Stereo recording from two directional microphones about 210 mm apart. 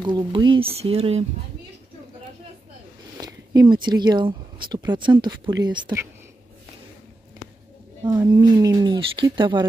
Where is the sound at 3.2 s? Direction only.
20° right (ahead or behind).